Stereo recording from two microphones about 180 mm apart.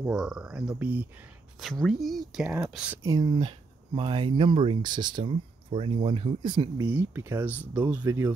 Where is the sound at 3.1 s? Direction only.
25° right (ahead or behind).